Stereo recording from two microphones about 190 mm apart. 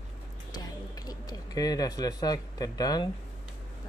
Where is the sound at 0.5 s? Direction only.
20° left (ahead or behind).